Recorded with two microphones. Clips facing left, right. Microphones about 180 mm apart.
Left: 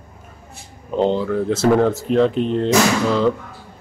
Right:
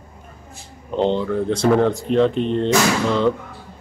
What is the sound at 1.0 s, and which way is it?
A man's voice, 5° left (ahead or behind).